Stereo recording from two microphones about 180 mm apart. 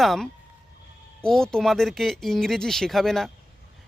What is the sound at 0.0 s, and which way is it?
Speech, centre (ahead or behind).